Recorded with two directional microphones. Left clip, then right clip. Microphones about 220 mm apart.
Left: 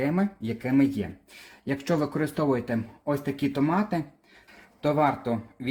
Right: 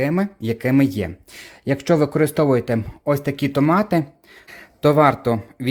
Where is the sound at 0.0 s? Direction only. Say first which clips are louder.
Right 6 dB; 40° right (ahead or behind).